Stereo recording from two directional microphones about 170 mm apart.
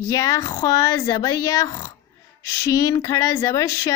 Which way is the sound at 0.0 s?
20° left (ahead or behind).